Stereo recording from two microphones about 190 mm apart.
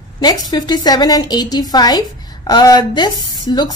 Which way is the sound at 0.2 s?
20° left (ahead or behind).